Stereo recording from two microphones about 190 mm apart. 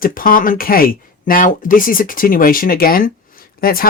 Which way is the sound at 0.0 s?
45° left (ahead or behind).